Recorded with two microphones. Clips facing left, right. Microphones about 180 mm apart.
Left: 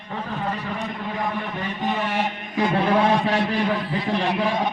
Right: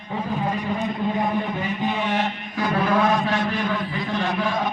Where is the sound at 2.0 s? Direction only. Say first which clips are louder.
Right 2 dB; 5° left (ahead or behind).